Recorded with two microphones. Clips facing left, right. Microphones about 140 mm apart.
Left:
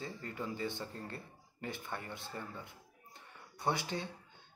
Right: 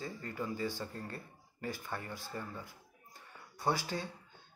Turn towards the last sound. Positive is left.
turn(degrees=20)  # may be behind; listen again after turning